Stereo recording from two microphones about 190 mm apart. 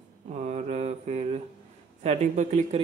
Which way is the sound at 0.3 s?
35° right (ahead or behind).